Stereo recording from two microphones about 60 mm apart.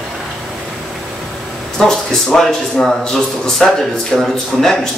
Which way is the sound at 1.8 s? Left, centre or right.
Centre.